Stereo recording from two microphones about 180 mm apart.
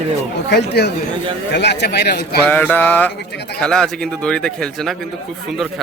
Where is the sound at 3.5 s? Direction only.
5° left (ahead or behind).